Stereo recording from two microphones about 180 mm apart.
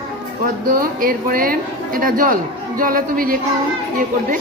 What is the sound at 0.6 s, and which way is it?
A woman's voice, 50° right (ahead or behind).